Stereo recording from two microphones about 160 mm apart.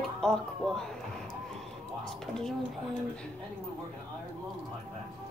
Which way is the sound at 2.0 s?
5° left (ahead or behind).